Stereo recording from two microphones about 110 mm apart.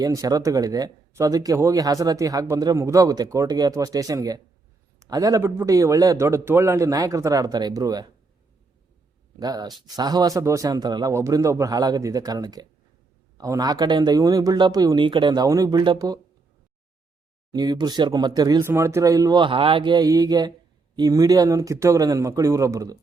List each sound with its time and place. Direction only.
0.0 s a man's voice: 35° right (ahead or behind)
9.4 s speech: 35° right (ahead or behind)
15.4 s speech: 35° right (ahead or behind)
17.5 s speech: 40° right (ahead or behind)
18.6 s speech: 25° right (ahead or behind)
19.4 s speech: 55° right (ahead or behind); by 23.0 s 30° right (ahead or behind)